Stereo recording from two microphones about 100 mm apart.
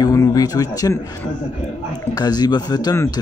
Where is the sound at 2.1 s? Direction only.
45° left (ahead or behind).